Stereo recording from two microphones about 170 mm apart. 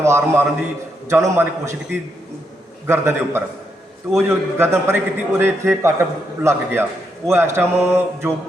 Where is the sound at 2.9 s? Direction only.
15° right (ahead or behind).